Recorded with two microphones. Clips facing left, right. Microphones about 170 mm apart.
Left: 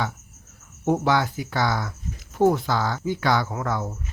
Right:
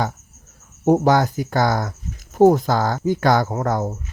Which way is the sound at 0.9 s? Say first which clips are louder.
Right 6 dB; 40° right (ahead or behind).